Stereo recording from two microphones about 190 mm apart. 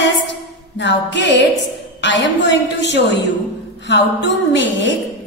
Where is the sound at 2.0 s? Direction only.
70° left (ahead or behind).